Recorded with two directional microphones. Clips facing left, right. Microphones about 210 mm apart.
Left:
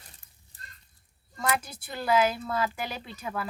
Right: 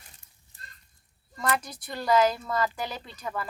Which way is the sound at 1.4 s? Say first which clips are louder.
Right 1 dB; 5° left (ahead or behind).